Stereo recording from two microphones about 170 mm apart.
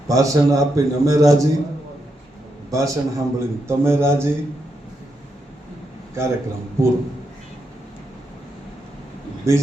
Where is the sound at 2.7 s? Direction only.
20° right (ahead or behind).